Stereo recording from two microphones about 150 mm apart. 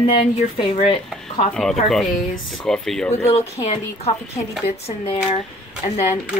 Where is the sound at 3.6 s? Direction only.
25° left (ahead or behind).